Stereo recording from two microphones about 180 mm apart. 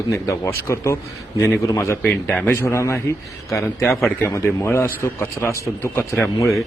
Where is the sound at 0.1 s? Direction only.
15° left (ahead or behind).